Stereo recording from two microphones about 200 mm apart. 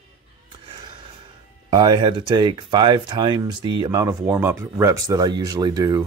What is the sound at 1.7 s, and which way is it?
Speech, 20° right (ahead or behind).